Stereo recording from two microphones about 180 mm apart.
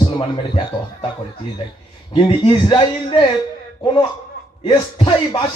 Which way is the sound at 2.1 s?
25° left (ahead or behind).